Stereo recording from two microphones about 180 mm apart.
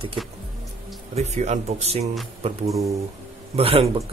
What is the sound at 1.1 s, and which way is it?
Speech, 40° right (ahead or behind).